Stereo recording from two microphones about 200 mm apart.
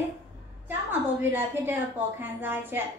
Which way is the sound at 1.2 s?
10° right (ahead or behind).